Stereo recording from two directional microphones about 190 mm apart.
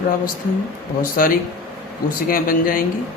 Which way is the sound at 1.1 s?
50° left (ahead or behind).